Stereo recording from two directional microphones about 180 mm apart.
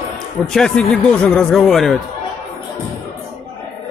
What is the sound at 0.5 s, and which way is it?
A man's voice, 5° left (ahead or behind).